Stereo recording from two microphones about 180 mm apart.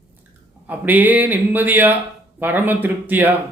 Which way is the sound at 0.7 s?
10° right (ahead or behind).